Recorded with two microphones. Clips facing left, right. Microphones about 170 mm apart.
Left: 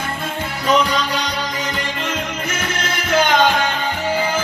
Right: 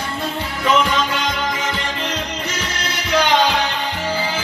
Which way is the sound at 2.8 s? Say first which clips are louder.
Left 1 dB; 50° left (ahead or behind).